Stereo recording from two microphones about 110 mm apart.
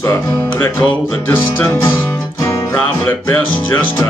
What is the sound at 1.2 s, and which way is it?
Music, 20° left (ahead or behind).